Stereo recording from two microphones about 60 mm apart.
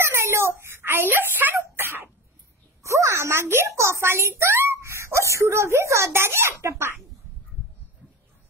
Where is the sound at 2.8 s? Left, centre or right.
Right.